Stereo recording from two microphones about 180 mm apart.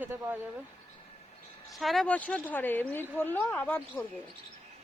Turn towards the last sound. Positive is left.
turn(degrees=10)  # may be behind; listen again after turning